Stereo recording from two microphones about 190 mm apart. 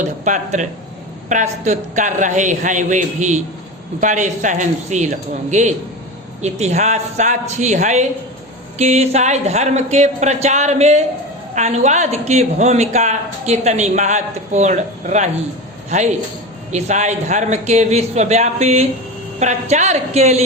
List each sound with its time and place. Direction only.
0.0 s speech: 40° right (ahead or behind)